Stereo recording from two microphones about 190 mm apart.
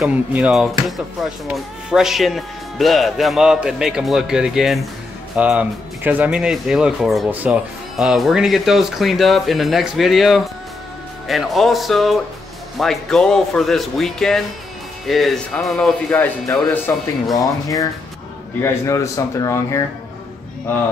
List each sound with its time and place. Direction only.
0.0 s speech: 5° right (ahead or behind); by 16.9 s 10° left (ahead or behind)
18.6 s speech: 15° left (ahead or behind)